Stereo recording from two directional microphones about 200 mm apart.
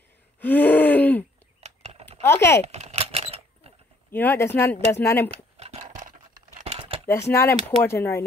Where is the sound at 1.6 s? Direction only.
30° right (ahead or behind).